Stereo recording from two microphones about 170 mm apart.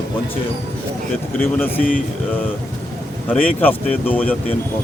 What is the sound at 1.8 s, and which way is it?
Speech, 55° left (ahead or behind).